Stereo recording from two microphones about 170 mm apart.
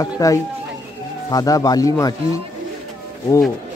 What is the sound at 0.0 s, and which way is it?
Speech, 20° left (ahead or behind).